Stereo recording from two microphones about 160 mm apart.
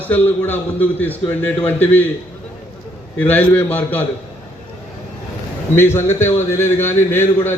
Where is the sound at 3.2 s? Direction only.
10° left (ahead or behind).